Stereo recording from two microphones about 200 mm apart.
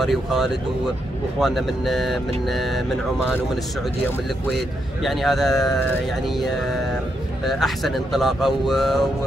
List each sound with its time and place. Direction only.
0.0 s speech: centre (ahead or behind)
5.0 s speech: centre (ahead or behind)